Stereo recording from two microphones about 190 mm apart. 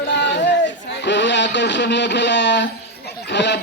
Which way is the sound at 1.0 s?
70° left (ahead or behind).